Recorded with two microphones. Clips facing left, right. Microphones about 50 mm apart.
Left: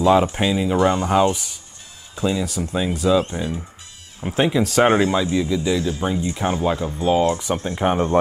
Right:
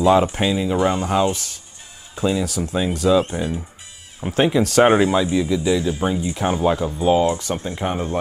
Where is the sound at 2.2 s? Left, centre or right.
Centre.